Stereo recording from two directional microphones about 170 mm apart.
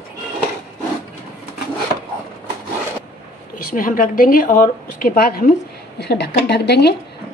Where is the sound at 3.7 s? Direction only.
50° left (ahead or behind).